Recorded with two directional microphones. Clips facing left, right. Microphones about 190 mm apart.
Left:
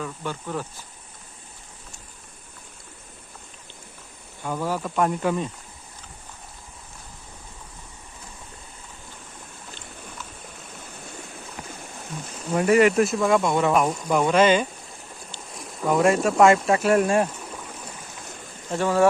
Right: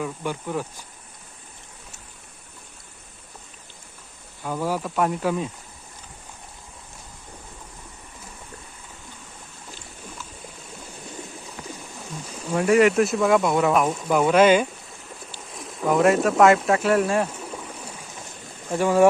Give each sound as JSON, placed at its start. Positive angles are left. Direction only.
{"t": 0.0, "sound": "speech", "side_deg": -10}
{"t": 4.4, "sound": "speech", "side_deg": -5}
{"t": 12.5, "sound": "speech", "side_deg": 0}
{"t": 16.9, "sound": "speech", "side_deg": 15}
{"t": 18.7, "sound": "speech", "side_deg": -15}